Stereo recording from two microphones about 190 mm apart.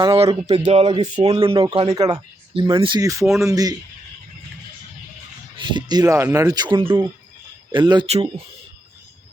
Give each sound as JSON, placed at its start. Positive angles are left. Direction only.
{"t": 0.0, "sound": "speech", "side_deg": -25}
{"t": 5.5, "sound": "speech", "side_deg": -20}